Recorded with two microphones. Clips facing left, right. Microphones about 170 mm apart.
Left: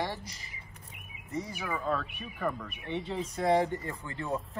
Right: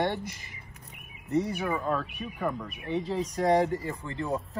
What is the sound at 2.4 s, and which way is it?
Speech, 15° right (ahead or behind).